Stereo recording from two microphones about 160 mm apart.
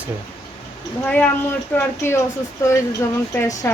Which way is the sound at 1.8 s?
15° left (ahead or behind).